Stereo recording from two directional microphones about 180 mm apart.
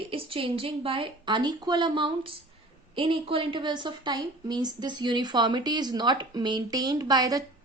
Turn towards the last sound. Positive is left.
turn(degrees=-20)  # may be behind; listen again after turning